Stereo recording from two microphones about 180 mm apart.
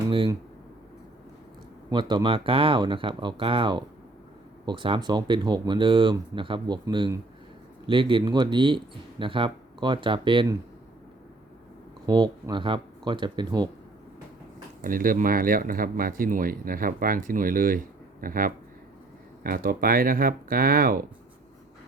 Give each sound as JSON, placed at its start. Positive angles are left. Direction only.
{"t": 1.9, "sound": "speech", "side_deg": -25}
{"t": 12.0, "sound": "speech", "side_deg": -25}
{"t": 14.8, "sound": "speech", "side_deg": -50}